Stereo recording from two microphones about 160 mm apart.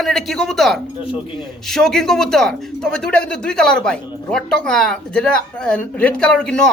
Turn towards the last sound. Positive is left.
turn(degrees=5)  # may be behind; listen again after turning